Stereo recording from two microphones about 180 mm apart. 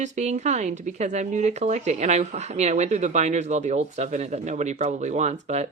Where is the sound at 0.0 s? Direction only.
40° right (ahead or behind).